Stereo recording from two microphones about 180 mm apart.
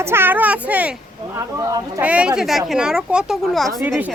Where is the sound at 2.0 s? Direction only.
5° right (ahead or behind).